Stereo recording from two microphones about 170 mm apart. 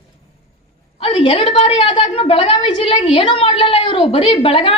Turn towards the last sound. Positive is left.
turn(degrees=35)  # may be behind; listen again after turning